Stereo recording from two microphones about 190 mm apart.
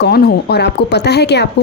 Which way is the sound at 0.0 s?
55° left (ahead or behind).